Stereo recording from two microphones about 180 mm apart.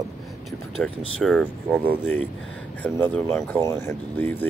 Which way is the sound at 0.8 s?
5° left (ahead or behind).